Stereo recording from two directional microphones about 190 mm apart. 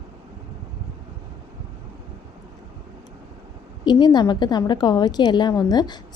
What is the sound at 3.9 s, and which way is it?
A woman's voice, 25° left (ahead or behind).